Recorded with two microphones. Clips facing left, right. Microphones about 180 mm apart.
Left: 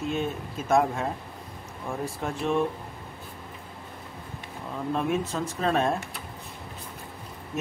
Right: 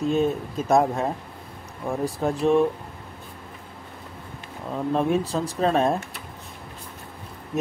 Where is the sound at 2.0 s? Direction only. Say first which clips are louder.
Right 8 dB; 35° right (ahead or behind).